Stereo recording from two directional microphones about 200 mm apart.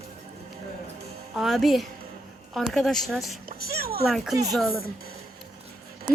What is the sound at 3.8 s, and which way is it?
Speech, 50° right (ahead or behind).